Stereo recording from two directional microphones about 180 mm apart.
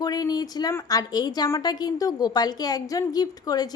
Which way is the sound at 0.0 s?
20° left (ahead or behind).